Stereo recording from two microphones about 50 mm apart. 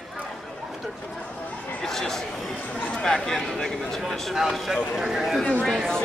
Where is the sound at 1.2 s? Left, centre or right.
Left.